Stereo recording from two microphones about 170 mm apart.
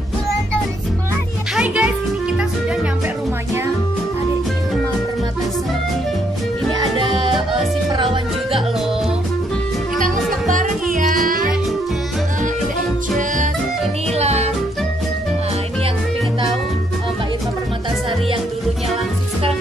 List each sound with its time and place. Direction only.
1.5 s music: 5° right (ahead or behind)
7.0 s music: 30° right (ahead or behind)
9.9 s music: 50° right (ahead or behind)
14.1 s music: 40° right (ahead or behind)